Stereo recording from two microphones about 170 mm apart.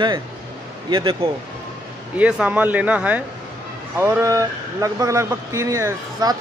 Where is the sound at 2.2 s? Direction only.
10° right (ahead or behind).